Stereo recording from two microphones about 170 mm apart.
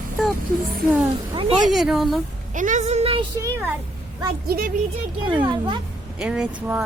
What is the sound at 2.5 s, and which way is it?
Speech, 50° right (ahead or behind).